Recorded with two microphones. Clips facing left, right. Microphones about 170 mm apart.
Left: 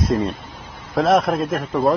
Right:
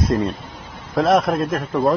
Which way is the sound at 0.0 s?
Centre (ahead or behind).